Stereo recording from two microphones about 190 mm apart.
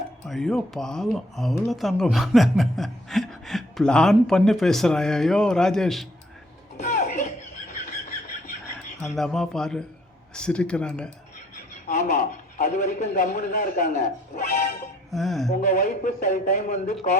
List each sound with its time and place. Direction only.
0.3 s speech: centre (ahead or behind)
6.7 s a sound: 35° left (ahead or behind)
9.1 s speech: centre (ahead or behind)
11.9 s a man's voice: 40° left (ahead or behind)
15.1 s speech: centre (ahead or behind)
15.7 s a man's voice: 45° left (ahead or behind)